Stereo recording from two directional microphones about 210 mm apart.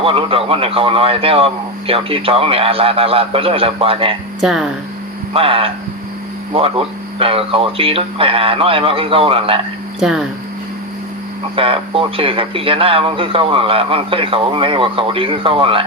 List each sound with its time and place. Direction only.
0.0 s speech: 25° right (ahead or behind)
4.4 s speech: centre (ahead or behind)
5.3 s speech: 25° right (ahead or behind)
10.0 s speech: centre (ahead or behind)
11.5 s speech: 25° right (ahead or behind)